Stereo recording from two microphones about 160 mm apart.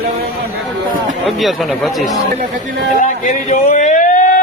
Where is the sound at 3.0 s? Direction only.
55° left (ahead or behind).